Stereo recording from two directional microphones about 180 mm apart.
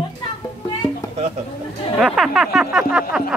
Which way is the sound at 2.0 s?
Centre (ahead or behind).